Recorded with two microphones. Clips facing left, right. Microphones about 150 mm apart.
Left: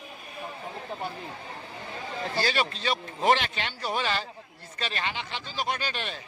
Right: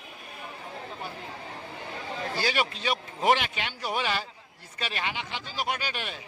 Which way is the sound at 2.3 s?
15° right (ahead or behind).